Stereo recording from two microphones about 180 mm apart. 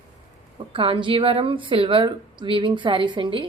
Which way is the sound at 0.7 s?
30° right (ahead or behind).